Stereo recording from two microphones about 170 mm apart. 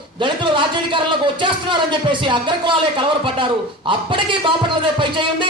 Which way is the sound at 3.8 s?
30° right (ahead or behind).